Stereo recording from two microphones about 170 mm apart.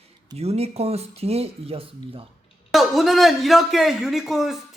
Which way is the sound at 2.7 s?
Centre (ahead or behind).